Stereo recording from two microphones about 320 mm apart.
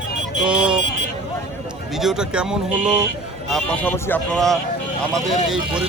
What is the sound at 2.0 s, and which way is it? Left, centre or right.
Speech, centre.